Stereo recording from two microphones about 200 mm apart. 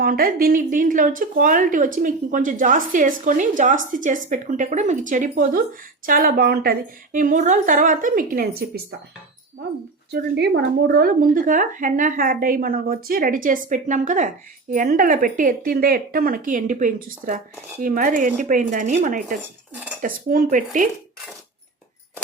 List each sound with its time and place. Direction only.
0.0 s a woman's voice: 45° right (ahead or behind)
10.1 s a woman's voice: 55° right (ahead or behind)